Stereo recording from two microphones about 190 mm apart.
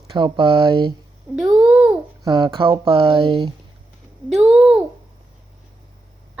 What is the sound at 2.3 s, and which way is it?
Speech, 20° right (ahead or behind).